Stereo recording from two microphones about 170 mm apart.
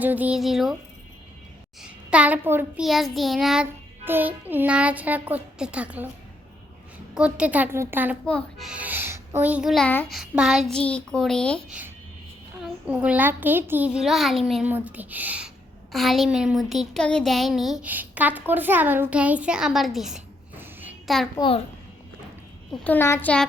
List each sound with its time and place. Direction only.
0.0 s a woman's voice: 10° right (ahead or behind)
1.8 s a child's voice: 5° right (ahead or behind)
2.8 s child singing: centre (ahead or behind)
7.1 s child singing: 5° right (ahead or behind)
8.3 s a woman's voice: 5° left (ahead or behind)
12.8 s child singing: 5° right (ahead or behind)
15.9 s a woman's voice: centre (ahead or behind)
21.3 s a child's voice: 30° left (ahead or behind)
22.7 s a child's voice: 10° left (ahead or behind)